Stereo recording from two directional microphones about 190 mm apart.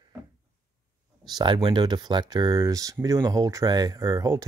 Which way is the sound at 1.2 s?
20° right (ahead or behind).